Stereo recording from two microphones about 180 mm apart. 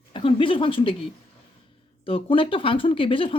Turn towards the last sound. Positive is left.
turn(degrees=30)  # may be behind; listen again after turning